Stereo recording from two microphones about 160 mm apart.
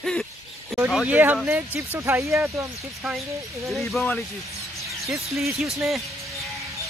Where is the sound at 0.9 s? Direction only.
5° right (ahead or behind).